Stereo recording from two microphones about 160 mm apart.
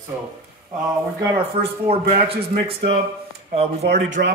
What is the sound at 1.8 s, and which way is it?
Speech, 40° right (ahead or behind).